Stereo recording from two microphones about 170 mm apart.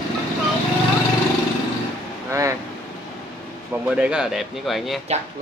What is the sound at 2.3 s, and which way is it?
Vehicle, 15° right (ahead or behind).